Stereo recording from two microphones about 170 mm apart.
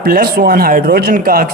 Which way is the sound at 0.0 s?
60° right (ahead or behind).